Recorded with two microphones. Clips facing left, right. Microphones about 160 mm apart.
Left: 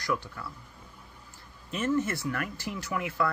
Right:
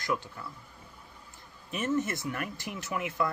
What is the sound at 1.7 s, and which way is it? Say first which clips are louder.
Speech: left 2 dB; 20° right (ahead or behind).